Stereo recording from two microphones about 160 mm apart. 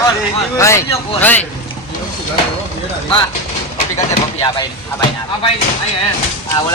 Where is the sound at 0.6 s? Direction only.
15° left (ahead or behind).